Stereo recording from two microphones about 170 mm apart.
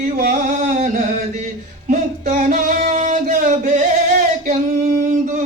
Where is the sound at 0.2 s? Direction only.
55° right (ahead or behind).